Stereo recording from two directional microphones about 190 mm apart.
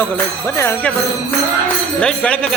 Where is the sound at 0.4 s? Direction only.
15° left (ahead or behind).